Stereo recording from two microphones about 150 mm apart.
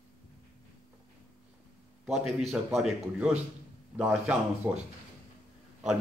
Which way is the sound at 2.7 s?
5° right (ahead or behind).